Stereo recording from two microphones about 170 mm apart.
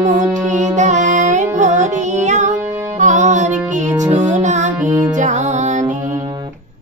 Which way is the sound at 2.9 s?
45° right (ahead or behind).